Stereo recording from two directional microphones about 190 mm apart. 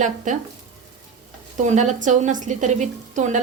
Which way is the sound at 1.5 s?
40° right (ahead or behind).